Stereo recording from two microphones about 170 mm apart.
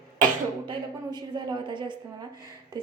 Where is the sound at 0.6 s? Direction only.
25° right (ahead or behind).